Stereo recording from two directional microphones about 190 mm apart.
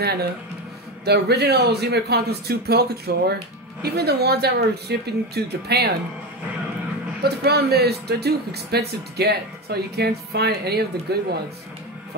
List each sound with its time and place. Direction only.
0.0 s speech: 55° right (ahead or behind)
7.2 s speech: 55° right (ahead or behind)